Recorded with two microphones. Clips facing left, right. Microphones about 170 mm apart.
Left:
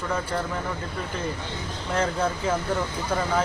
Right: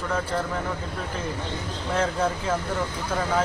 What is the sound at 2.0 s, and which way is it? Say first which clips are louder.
A man's voice: even; centre (ahead or behind).